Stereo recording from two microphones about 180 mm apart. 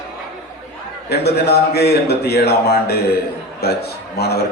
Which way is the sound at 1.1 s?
65° left (ahead or behind).